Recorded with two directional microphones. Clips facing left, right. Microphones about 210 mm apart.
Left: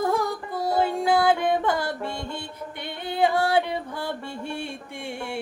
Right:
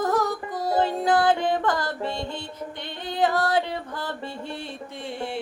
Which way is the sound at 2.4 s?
10° left (ahead or behind).